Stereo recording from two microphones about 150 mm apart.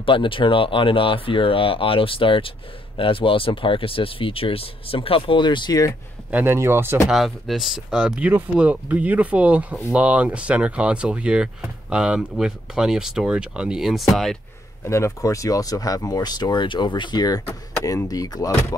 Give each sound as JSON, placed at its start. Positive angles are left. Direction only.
{"t": 0.0, "sound": "speech", "side_deg": 35}
{"t": 6.3, "sound": "speech", "side_deg": -15}
{"t": 7.1, "sound": "speech", "side_deg": 0}
{"t": 14.9, "sound": "speech", "side_deg": 20}